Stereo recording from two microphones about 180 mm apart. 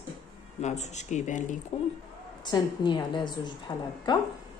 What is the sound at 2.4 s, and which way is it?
A woman's voice, 25° left (ahead or behind).